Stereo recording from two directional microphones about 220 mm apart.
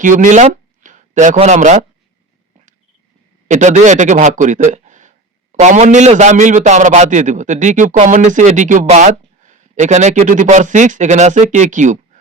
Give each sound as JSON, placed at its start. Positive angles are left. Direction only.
{"t": 0.0, "sound": "speech", "side_deg": -35}
{"t": 3.5, "sound": "a man's voice", "side_deg": -35}